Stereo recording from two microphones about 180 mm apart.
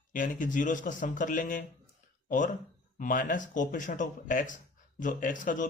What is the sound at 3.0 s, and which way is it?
Speech, 50° left (ahead or behind).